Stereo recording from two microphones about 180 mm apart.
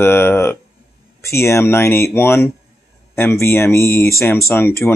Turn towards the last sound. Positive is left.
turn(degrees=15)  # may be behind; listen again after turning